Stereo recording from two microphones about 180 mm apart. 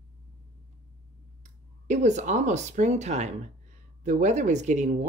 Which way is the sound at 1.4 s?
40° right (ahead or behind).